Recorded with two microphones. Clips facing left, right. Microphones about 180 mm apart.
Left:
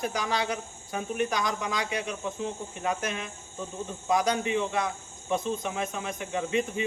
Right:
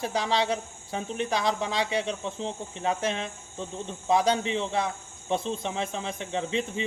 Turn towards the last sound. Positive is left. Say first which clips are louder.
# left 1 dB
turn(degrees=-25)  # may be behind; listen again after turning